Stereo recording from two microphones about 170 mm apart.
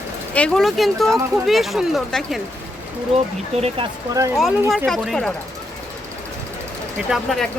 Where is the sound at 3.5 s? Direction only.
35° right (ahead or behind).